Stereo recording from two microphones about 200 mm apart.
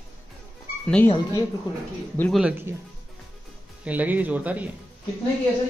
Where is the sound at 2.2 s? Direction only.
Centre (ahead or behind).